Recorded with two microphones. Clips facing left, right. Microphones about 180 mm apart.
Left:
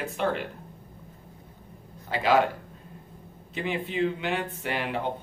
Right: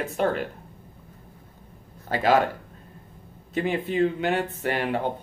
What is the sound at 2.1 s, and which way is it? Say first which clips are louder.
Speech: right 4 dB; 45° right (ahead or behind).